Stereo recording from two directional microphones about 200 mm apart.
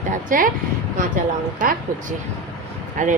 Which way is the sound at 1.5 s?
40° right (ahead or behind).